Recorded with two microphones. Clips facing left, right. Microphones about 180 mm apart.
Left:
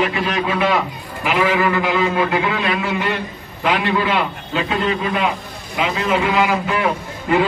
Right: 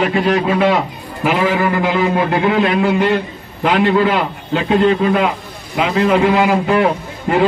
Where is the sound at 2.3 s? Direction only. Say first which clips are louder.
Right 5 dB; 40° right (ahead or behind).